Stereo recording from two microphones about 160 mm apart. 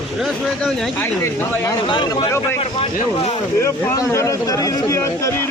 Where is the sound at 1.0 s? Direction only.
20° left (ahead or behind).